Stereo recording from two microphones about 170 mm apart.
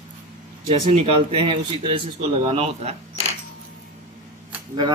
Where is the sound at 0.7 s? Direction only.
35° right (ahead or behind).